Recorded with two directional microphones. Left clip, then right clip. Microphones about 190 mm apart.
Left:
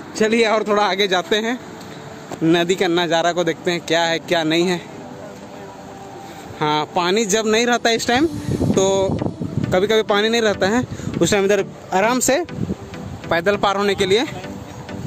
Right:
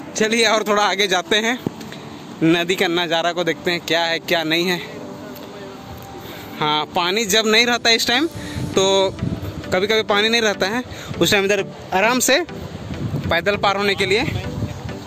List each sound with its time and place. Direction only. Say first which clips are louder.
0.1 s speech: even; 5° left (ahead or behind)
6.6 s speech: even; 5° left (ahead or behind)